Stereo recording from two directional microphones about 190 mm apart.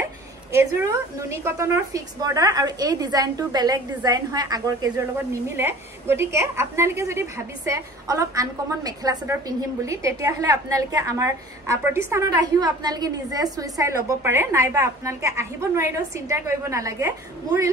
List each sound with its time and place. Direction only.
0.6 s a woman's voice: 10° right (ahead or behind)